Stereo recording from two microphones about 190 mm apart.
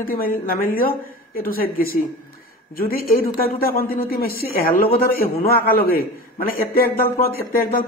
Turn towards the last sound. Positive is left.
turn(degrees=50)  # may be behind; listen again after turning